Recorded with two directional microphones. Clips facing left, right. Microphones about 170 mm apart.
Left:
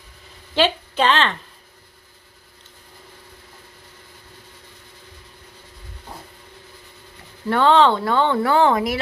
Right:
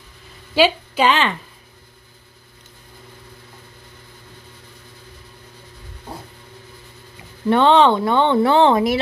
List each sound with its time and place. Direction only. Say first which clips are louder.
0.6 s a woman's voice: right 3 dB; 10° right (ahead or behind)
7.4 s speech: right 2 dB; 20° right (ahead or behind)